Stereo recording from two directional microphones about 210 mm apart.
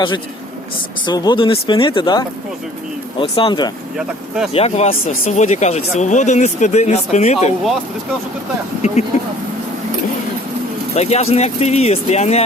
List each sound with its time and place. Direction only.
1.0 s speech: 20° left (ahead or behind)
8.8 s speech: 30° left (ahead or behind)
10.9 s speech: 30° left (ahead or behind)